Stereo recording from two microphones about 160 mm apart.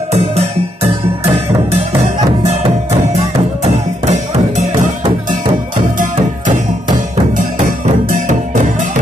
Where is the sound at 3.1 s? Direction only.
45° right (ahead or behind).